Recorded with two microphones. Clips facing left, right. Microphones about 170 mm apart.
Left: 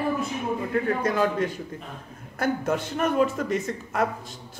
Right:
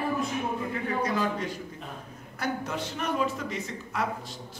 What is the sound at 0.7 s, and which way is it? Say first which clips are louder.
Speech: left 7 dB; 50° left (ahead or behind).